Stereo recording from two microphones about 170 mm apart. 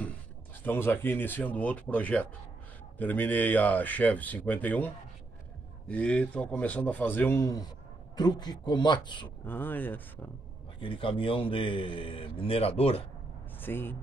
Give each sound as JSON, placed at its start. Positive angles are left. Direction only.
{"t": 0.7, "sound": "a man's voice", "side_deg": 15}
{"t": 9.5, "sound": "speech", "side_deg": 10}
{"t": 10.8, "sound": "a man's voice", "side_deg": 30}
{"t": 13.6, "sound": "speech", "side_deg": 10}